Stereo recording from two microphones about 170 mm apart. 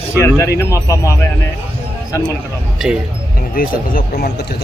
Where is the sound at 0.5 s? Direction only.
20° left (ahead or behind).